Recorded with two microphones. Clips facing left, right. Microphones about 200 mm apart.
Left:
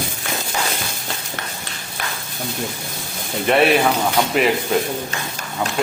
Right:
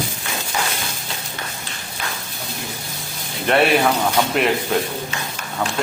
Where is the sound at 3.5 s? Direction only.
Centre (ahead or behind).